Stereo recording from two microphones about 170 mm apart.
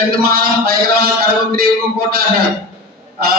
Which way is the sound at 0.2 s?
60° right (ahead or behind).